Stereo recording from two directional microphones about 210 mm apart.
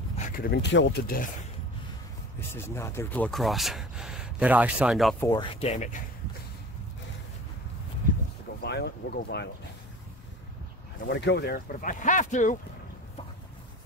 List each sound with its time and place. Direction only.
0.3 s speech: 50° left (ahead or behind)
2.5 s speech: 10° left (ahead or behind)
5.2 s speech: 15° left (ahead or behind)
5.6 s speech: 30° left (ahead or behind)
8.6 s speech: 50° left (ahead or behind)
11.1 s speech: 55° left (ahead or behind); by 12.5 s 35° left (ahead or behind)